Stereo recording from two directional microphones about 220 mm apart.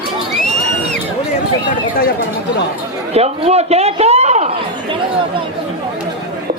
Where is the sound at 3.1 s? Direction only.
30° right (ahead or behind).